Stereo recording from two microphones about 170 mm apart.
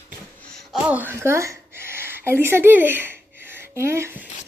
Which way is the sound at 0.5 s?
Centre (ahead or behind).